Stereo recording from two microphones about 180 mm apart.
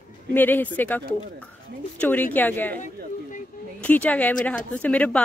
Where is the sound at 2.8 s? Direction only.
45° left (ahead or behind).